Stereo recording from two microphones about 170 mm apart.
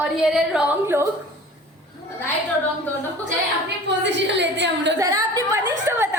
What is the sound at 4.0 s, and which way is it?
Speech, 90° right.